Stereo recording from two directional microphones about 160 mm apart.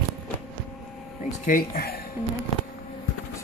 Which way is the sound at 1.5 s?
60° left (ahead or behind).